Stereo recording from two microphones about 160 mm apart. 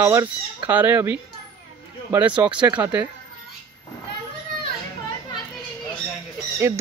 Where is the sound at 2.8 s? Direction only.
10° right (ahead or behind).